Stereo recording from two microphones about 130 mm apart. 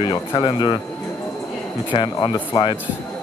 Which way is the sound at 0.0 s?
40° left (ahead or behind).